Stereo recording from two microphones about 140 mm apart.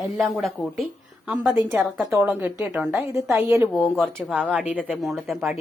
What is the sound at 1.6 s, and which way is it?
Speech, 15° right (ahead or behind).